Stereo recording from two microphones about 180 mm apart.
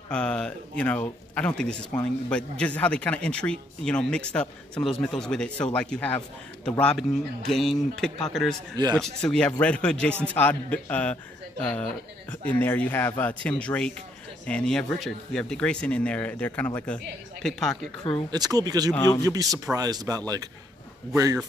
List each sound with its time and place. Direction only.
0.1 s a man's voice: 5° left (ahead or behind)
18.3 s speech: 20° right (ahead or behind)
18.9 s a man's voice: 15° left (ahead or behind)
19.2 s speech: 20° right (ahead or behind)